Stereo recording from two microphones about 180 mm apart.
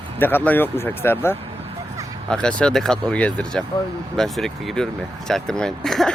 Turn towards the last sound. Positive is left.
turn(degrees=0)  # may be behind; listen again after turning